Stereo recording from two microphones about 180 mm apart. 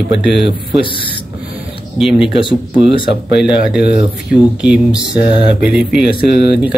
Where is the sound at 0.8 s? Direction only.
30° left (ahead or behind).